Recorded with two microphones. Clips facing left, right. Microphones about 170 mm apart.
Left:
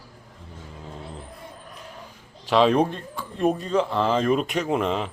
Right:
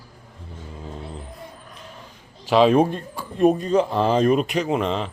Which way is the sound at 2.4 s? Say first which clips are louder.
Right 3 dB; 5° right (ahead or behind).